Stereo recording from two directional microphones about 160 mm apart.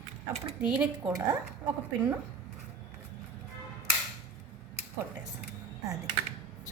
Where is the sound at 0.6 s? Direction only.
5° right (ahead or behind).